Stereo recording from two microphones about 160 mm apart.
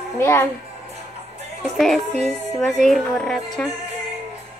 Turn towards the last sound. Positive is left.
turn(degrees=5)  # may be behind; listen again after turning